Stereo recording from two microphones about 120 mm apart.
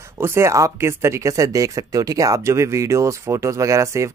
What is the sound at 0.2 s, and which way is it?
Speech, 20° right (ahead or behind).